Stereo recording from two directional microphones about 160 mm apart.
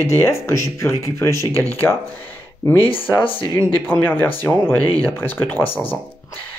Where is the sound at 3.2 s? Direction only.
35° left (ahead or behind).